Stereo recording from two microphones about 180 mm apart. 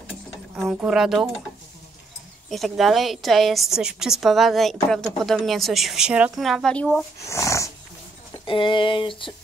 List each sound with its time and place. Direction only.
0.7 s a woman's voice: 5° right (ahead or behind)
2.5 s a woman's voice: centre (ahead or behind)
7.2 s dog: 15° left (ahead or behind)
8.5 s a sound: 25° left (ahead or behind)